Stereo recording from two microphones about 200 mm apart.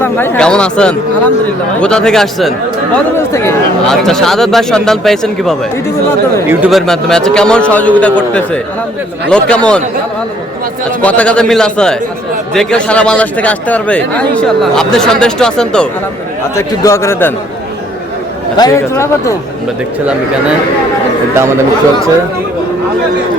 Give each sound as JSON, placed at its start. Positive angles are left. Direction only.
{"t": 0.0, "sound": "a man's voice", "side_deg": 10}
{"t": 2.9, "sound": "a man's voice", "side_deg": 15}
{"t": 3.8, "sound": "a man's voice", "side_deg": 0}
{"t": 11.0, "sound": "a man's voice", "side_deg": 5}
{"t": 16.6, "sound": "a man's voice", "side_deg": 15}
{"t": 18.5, "sound": "a man's voice", "side_deg": 15}